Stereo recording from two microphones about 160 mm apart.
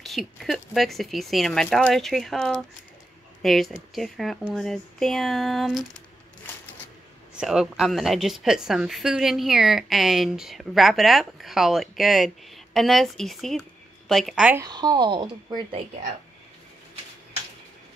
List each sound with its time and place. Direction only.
0.0 s a woman's voice: centre (ahead or behind)
7.3 s a woman's voice: 5° right (ahead or behind)
14.6 s a woman's voice: 25° right (ahead or behind)